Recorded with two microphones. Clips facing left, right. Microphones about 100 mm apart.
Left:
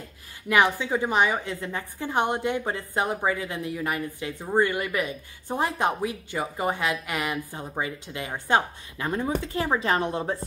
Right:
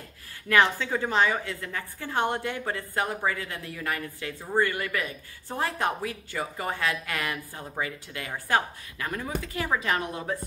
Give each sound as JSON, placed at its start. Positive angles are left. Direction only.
{"t": 0.5, "sound": "a woman's voice", "side_deg": 15}